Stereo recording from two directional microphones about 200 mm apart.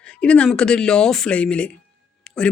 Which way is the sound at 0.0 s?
5° left (ahead or behind).